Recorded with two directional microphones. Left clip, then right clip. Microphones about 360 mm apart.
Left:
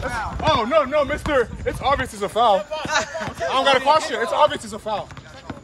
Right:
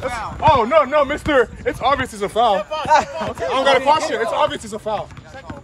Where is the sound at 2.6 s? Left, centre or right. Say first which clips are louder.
Right 7 dB; centre.